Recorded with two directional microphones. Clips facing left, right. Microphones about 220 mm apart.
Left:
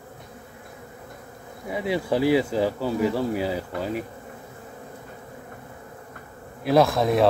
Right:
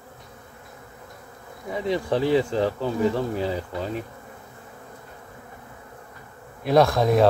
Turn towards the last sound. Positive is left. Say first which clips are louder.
# right 1 dB
turn(degrees=0)  # may be behind; listen again after turning